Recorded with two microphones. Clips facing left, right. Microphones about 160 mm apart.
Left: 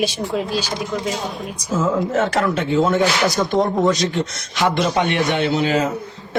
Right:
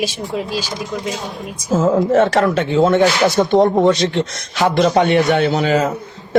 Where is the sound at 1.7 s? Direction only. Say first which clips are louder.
Right 6 dB; 40° right (ahead or behind).